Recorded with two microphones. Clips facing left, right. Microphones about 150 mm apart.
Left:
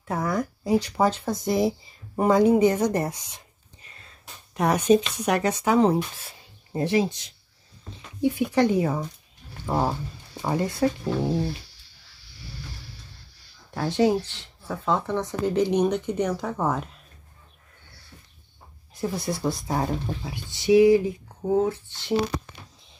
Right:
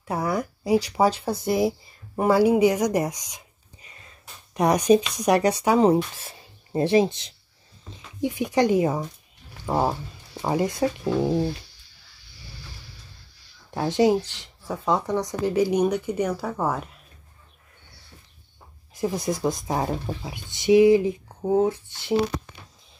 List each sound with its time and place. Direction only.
0.1 s speech: 10° right (ahead or behind)
6.7 s speech: 25° right (ahead or behind)
8.2 s speech: 15° right (ahead or behind)
13.7 s speech: 15° right (ahead or behind)
18.9 s speech: 20° right (ahead or behind)